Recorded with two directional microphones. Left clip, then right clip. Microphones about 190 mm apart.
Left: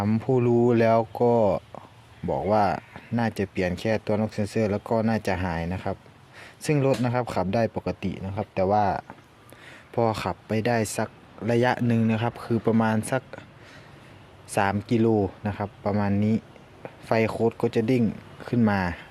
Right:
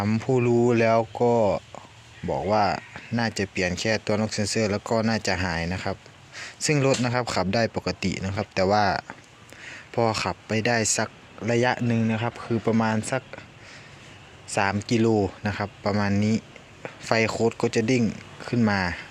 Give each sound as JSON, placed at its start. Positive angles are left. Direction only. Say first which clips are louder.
{"t": 0.0, "sound": "speech", "louder": "even", "side_deg": 10}
{"t": 9.6, "sound": "speech", "louder": "right 1 dB", "side_deg": 10}
{"t": 14.5, "sound": "speech", "louder": "even", "side_deg": 15}